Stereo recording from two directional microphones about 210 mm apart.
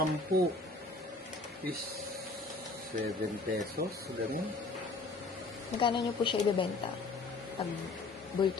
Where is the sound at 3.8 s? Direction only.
45° right (ahead or behind).